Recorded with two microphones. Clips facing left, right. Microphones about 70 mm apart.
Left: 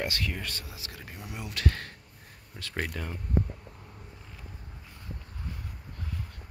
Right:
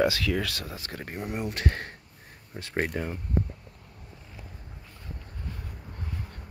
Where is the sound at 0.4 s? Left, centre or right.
Right.